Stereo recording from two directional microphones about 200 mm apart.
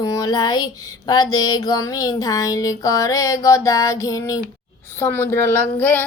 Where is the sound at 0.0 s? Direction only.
20° left (ahead or behind).